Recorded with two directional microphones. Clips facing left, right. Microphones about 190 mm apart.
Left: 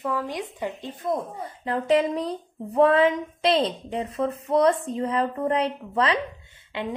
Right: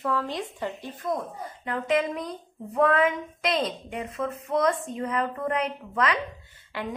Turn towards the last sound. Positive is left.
turn(degrees=20)  # may be behind; listen again after turning